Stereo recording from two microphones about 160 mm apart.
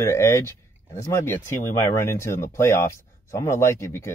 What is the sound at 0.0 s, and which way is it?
Speech, 15° left (ahead or behind).